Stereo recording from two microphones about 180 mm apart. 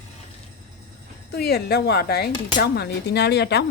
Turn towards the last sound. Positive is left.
turn(degrees=65)  # may be behind; listen again after turning